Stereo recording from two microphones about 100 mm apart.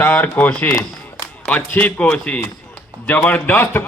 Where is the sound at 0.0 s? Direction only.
20° left (ahead or behind).